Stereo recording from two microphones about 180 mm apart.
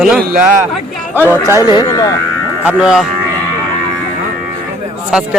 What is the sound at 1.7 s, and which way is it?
Speech, 20° left (ahead or behind).